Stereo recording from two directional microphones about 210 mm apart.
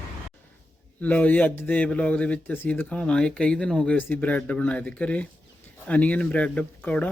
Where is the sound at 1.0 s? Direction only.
5° left (ahead or behind).